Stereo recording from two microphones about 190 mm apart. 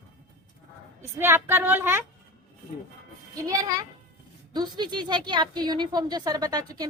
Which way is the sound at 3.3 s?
20° right (ahead or behind).